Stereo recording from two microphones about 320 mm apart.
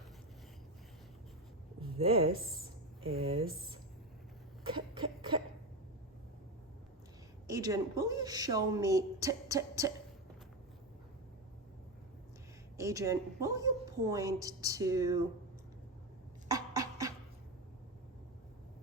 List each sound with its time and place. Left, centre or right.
1.8 s speech: centre
4.7 s a sound: centre
7.4 s speech: centre
12.7 s a woman's voice: centre
16.5 s dog: centre